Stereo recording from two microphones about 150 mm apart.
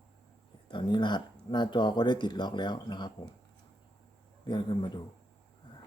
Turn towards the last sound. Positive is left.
turn(degrees=30)  # may be behind; listen again after turning